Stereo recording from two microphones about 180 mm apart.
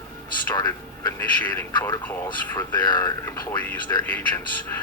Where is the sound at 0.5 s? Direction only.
20° left (ahead or behind).